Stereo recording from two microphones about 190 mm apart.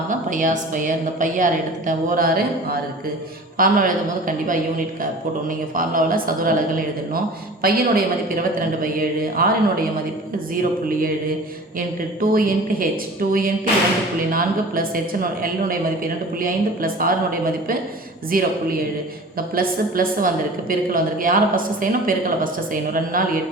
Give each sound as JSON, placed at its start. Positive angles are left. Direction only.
{"t": 0.1, "sound": "a woman's voice", "side_deg": -45}
{"t": 12.2, "sound": "a woman's voice", "side_deg": -50}
{"t": 19.5, "sound": "a woman's voice", "side_deg": -50}